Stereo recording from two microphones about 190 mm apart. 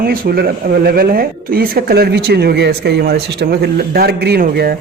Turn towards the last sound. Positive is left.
turn(degrees=-55)  # may be behind; listen again after turning